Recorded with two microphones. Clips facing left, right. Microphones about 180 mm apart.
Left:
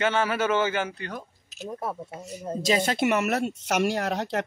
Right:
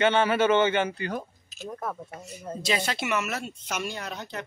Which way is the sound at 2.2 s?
35° left (ahead or behind).